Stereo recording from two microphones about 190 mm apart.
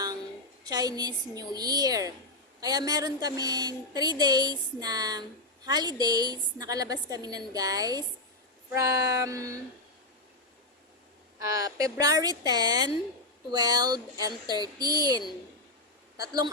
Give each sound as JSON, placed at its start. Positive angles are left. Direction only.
{"t": 0.6, "sound": "a woman's voice", "side_deg": -20}
{"t": 11.3, "sound": "a woman's voice", "side_deg": -15}